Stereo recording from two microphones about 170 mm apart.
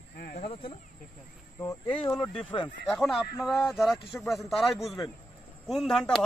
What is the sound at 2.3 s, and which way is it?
Speech, 30° left (ahead or behind).